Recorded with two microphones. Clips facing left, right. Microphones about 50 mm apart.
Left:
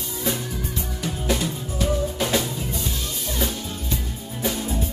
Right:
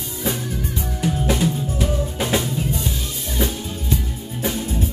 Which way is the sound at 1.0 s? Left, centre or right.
Centre.